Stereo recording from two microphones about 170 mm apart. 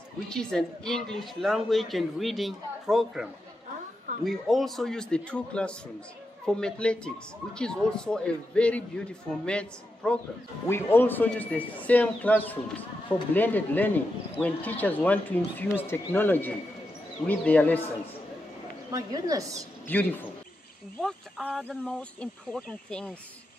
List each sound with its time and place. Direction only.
0.3 s a woman's voice: 5° left (ahead or behind)
18.9 s a woman's voice: 20° right (ahead or behind)
19.9 s a woman's voice: 10° left (ahead or behind)